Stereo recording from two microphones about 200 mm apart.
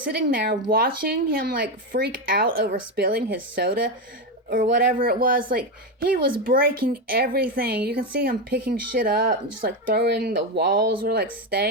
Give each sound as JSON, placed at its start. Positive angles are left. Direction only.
{"t": 0.1, "sound": "speech", "side_deg": -50}